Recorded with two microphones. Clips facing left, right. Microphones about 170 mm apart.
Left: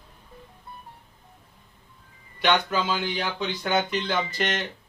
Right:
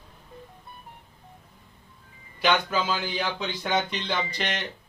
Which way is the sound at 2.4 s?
Centre (ahead or behind).